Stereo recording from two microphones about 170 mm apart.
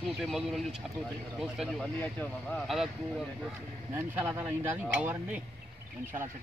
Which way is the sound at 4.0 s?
10° right (ahead or behind).